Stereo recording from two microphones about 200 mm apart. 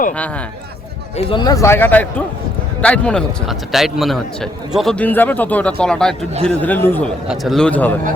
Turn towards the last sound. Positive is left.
turn(degrees=5)  # may be behind; listen again after turning